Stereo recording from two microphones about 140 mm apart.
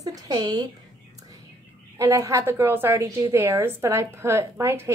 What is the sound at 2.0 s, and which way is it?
A woman's voice, 20° right (ahead or behind).